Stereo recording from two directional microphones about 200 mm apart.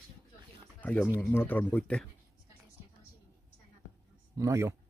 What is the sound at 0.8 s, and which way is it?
Speech, 5° left (ahead or behind).